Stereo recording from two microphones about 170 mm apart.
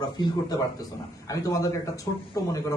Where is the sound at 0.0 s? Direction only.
25° left (ahead or behind).